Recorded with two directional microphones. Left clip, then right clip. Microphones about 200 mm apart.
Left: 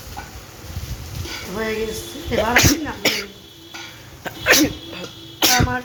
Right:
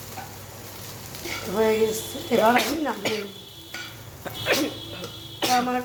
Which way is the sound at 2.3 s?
10° right (ahead or behind).